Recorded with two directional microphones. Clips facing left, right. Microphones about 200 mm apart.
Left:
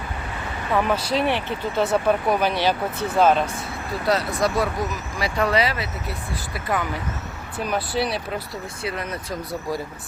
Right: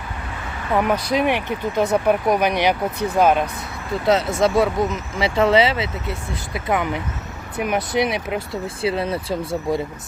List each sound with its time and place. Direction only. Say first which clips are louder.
0.7 s speech: right 2 dB; 15° right (ahead or behind)
8.8 s speech: right 8 dB; 30° right (ahead or behind)